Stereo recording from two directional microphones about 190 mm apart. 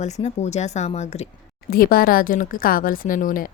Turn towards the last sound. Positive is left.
turn(degrees=45)  # may be behind; listen again after turning